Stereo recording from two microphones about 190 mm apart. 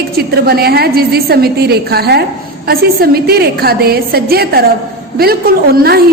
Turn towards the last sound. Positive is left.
turn(degrees=-55)  # may be behind; listen again after turning